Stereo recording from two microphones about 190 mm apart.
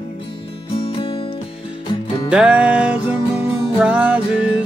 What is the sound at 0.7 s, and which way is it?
Music, 25° left (ahead or behind).